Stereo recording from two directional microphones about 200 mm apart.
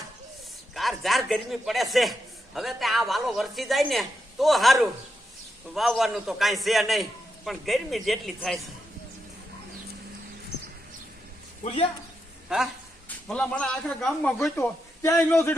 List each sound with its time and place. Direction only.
0.7 s a man's voice: centre (ahead or behind)
11.6 s speech: 25° left (ahead or behind)
12.5 s a man's voice: 5° right (ahead or behind); by 15.5 s 10° left (ahead or behind)